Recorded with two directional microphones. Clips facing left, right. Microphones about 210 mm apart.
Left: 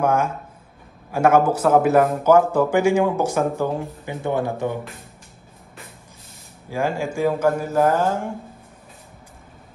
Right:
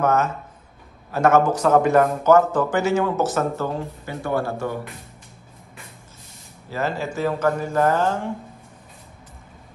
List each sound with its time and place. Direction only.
0.0 s a man's voice: 10° left (ahead or behind)
6.7 s a man's voice: 10° left (ahead or behind)